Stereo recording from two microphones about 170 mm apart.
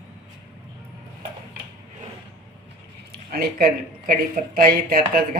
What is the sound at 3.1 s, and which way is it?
Speech, 60° right (ahead or behind).